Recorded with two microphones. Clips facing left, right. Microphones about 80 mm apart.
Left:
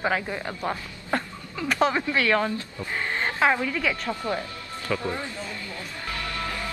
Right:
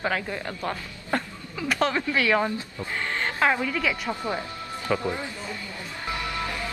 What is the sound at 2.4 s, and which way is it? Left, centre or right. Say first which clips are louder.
Speech: even; centre.